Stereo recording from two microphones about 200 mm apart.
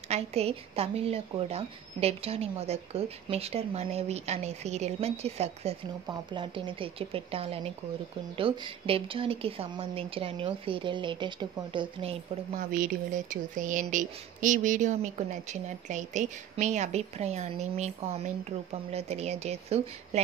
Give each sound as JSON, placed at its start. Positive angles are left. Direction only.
{"t": 0.1, "sound": "a woman's voice", "side_deg": -30}
{"t": 12.7, "sound": "speech", "side_deg": -45}